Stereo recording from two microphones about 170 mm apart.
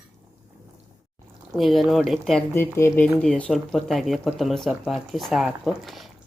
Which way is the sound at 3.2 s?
5° left (ahead or behind).